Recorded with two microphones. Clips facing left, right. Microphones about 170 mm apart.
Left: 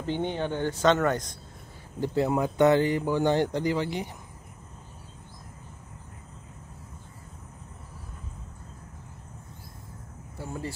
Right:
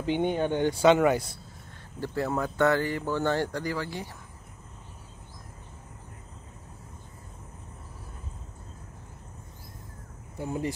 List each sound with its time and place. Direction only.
0.0 s speech: 10° right (ahead or behind)
2.0 s speech: 20° left (ahead or behind)
10.3 s speech: 15° right (ahead or behind)